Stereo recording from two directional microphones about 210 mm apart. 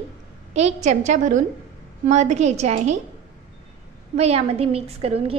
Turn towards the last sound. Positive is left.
turn(degrees=-30)  # may be behind; listen again after turning